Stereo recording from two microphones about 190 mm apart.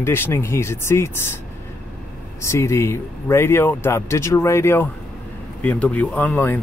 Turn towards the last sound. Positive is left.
turn(degrees=10)  # may be behind; listen again after turning